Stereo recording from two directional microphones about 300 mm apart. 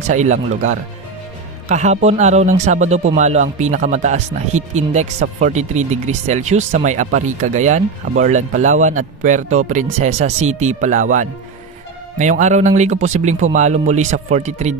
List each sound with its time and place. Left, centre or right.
0.1 s speech: right